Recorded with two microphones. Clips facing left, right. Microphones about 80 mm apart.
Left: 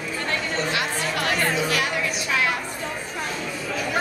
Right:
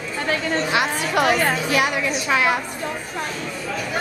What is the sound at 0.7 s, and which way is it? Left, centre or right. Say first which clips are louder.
Chatter: right 4 dB; centre.